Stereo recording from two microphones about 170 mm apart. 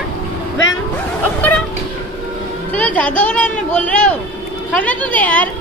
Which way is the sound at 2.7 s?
10° left (ahead or behind).